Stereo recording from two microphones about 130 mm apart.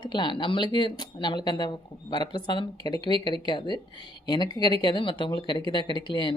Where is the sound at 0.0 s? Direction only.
35° left (ahead or behind).